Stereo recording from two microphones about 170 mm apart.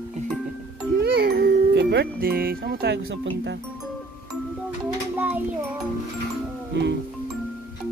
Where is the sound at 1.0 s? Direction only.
65° right (ahead or behind).